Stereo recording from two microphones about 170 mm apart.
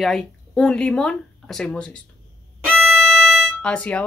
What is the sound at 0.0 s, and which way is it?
Speech, centre (ahead or behind).